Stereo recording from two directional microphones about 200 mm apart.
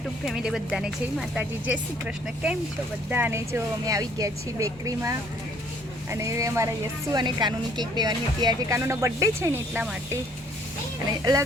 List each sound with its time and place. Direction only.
0.3 s a woman's voice: centre (ahead or behind)